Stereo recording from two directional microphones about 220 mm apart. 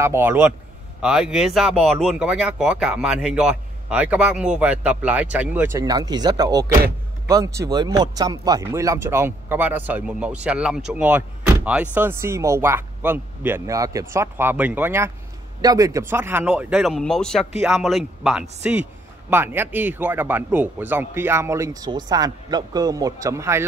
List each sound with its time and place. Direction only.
0.0 s speech: 10° right (ahead or behind)
17.6 s speech: 10° right (ahead or behind)